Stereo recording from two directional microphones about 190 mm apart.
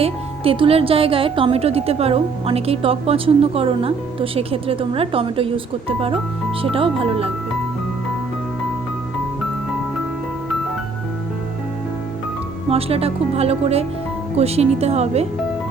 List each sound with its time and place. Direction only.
0.0 s speech: 30° right (ahead or behind)
6.6 s speech: 30° right (ahead or behind)
12.7 s speech: 30° right (ahead or behind)